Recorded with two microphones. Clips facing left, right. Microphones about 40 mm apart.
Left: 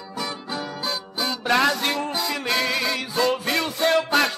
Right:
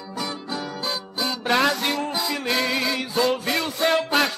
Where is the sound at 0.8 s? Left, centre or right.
Centre.